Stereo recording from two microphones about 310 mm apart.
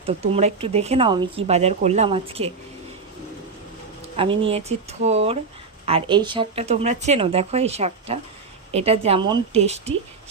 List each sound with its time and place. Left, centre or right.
0.0 s speech: centre
4.2 s speech: centre